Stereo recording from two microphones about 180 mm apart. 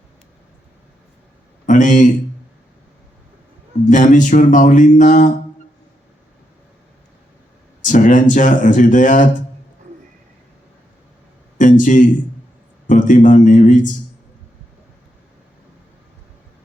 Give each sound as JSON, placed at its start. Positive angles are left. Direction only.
{"t": 1.6, "sound": "speech", "side_deg": 45}
{"t": 3.8, "sound": "speech", "side_deg": 45}
{"t": 7.8, "sound": "speech", "side_deg": 45}
{"t": 11.5, "sound": "speech", "side_deg": 45}